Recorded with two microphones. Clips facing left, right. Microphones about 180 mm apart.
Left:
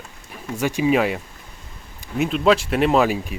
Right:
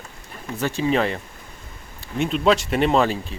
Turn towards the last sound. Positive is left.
turn(degrees=10)  # may be behind; listen again after turning